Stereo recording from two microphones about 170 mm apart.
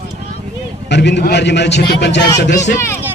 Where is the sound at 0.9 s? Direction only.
80° left.